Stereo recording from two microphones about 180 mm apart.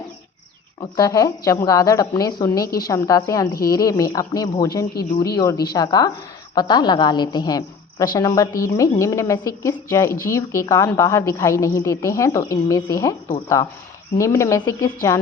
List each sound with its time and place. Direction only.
0.8 s a woman's voice: 20° left (ahead or behind)